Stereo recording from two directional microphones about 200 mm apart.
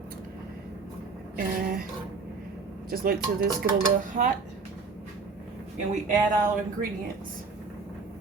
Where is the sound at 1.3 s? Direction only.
45° right (ahead or behind).